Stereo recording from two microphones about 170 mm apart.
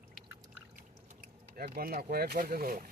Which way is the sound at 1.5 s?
60° right (ahead or behind).